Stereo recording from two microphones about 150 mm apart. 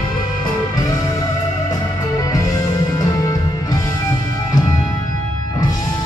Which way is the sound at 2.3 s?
25° left (ahead or behind).